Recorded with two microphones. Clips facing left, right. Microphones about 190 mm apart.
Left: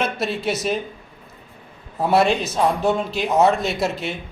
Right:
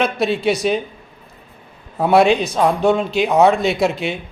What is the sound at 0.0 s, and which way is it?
Speech, centre (ahead or behind).